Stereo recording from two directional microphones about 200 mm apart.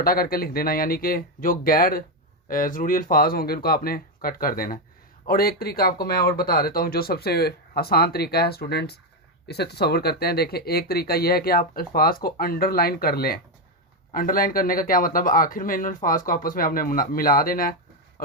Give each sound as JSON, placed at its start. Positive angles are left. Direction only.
{"t": 0.0, "sound": "speech", "side_deg": 45}